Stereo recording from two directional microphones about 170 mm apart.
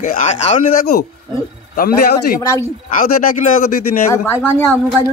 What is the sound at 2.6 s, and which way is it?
Speech, 50° left (ahead or behind).